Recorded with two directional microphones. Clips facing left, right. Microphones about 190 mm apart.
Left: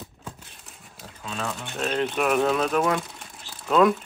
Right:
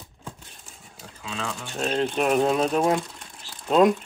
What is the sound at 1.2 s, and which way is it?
Speech, centre (ahead or behind).